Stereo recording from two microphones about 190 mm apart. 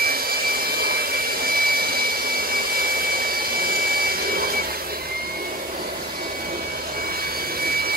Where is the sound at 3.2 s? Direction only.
50° right (ahead or behind).